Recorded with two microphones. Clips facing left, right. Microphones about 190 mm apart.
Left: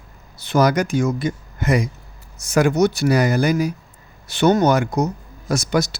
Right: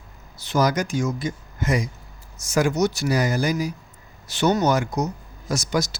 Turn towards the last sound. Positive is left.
turn(degrees=60)  # may be behind; listen again after turning